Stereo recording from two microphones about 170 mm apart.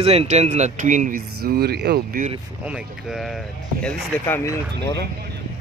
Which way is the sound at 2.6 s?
5° right (ahead or behind).